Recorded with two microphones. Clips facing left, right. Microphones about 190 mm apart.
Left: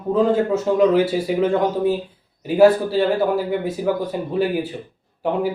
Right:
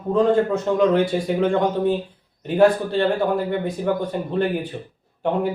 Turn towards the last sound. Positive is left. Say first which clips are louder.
# even
turn(degrees=5)  # may be behind; listen again after turning